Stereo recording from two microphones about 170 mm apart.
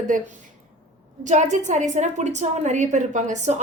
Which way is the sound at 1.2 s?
45° right (ahead or behind).